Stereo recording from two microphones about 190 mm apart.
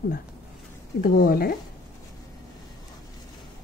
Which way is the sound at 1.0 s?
50° left (ahead or behind).